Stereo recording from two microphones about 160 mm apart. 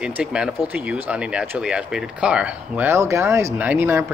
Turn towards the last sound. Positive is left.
turn(degrees=-15)  # may be behind; listen again after turning